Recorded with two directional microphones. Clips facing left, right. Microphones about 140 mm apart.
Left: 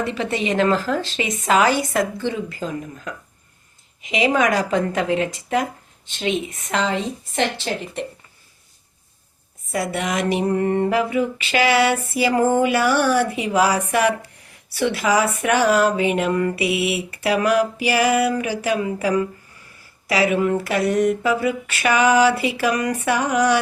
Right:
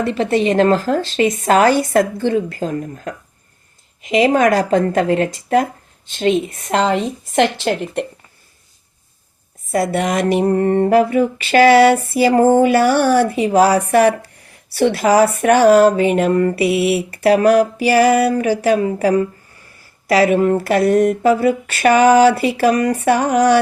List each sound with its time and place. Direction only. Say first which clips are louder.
0.0 s speech: right 7 dB; 40° right (ahead or behind)
7.3 s speech: right 7 dB; 55° right (ahead or behind)
9.7 s speech: right 6 dB; 45° right (ahead or behind)